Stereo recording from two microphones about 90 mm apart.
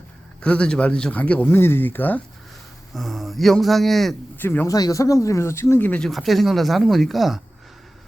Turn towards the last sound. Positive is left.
turn(degrees=0)  # may be behind; listen again after turning